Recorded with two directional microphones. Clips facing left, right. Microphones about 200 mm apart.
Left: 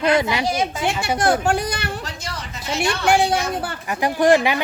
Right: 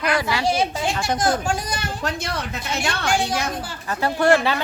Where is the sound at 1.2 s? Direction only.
65° left (ahead or behind).